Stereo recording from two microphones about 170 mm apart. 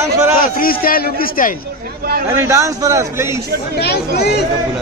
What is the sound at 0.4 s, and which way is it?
A man's voice, 60° left (ahead or behind).